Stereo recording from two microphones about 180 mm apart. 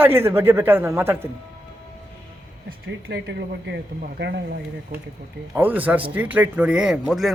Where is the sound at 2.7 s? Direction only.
65° right (ahead or behind).